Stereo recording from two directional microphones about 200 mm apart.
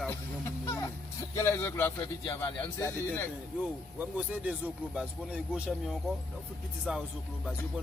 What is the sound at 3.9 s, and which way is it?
Speech, 5° right (ahead or behind).